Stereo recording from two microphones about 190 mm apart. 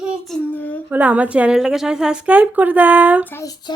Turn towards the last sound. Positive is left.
turn(degrees=15)  # may be behind; listen again after turning